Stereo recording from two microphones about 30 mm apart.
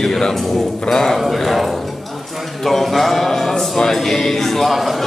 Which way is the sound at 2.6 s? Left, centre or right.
Centre.